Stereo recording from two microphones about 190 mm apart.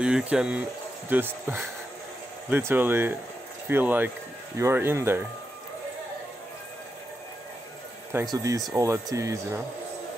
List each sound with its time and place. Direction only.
0.0 s speech: 5° right (ahead or behind)
2.7 s speech: 10° right (ahead or behind)
8.1 s speech: 15° right (ahead or behind)